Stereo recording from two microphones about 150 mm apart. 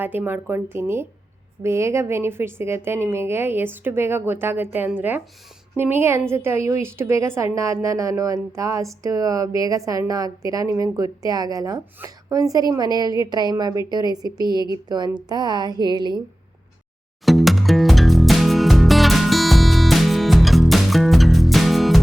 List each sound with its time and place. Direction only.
0.0 s a woman's voice: 15° right (ahead or behind); by 16.2 s 30° right (ahead or behind)
17.2 s music: centre (ahead or behind)